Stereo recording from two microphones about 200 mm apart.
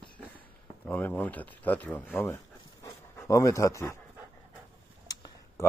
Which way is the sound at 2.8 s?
15° left (ahead or behind).